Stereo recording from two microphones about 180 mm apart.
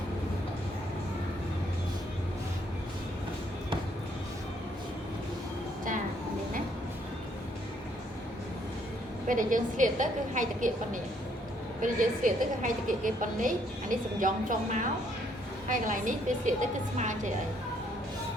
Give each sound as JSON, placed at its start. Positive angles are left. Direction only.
{"t": 9.2, "sound": "a woman's voice", "side_deg": -45}